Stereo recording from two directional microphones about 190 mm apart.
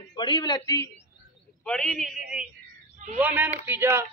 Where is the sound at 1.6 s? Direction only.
5° left (ahead or behind).